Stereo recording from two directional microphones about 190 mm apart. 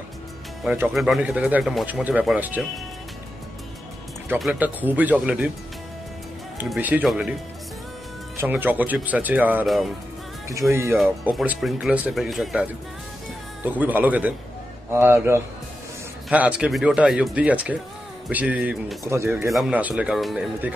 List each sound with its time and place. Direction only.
0.7 s speech: 5° right (ahead or behind)
4.4 s speech: 5° right (ahead or behind)
6.6 s speech: 10° right (ahead or behind)
8.4 s speech: 10° right (ahead or behind)
10.5 s speech: 15° right (ahead or behind)
11.0 s speech: 5° right (ahead or behind)
13.7 s speech: 10° right (ahead or behind)